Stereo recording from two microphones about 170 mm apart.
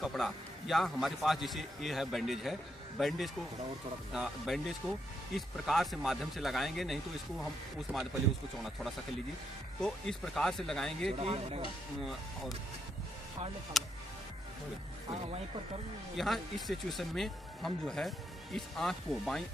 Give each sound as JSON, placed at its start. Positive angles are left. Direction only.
{"t": 0.0, "sound": "speech", "side_deg": 0}
{"t": 9.8, "sound": "speech", "side_deg": 5}
{"t": 11.1, "sound": "speech", "side_deg": -35}
{"t": 12.0, "sound": "speech", "side_deg": 0}
{"t": 13.7, "sound": "speech", "side_deg": 0}
{"t": 16.2, "sound": "speech", "side_deg": 0}